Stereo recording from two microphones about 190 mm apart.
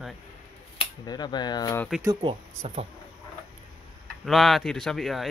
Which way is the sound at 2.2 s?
30° right (ahead or behind).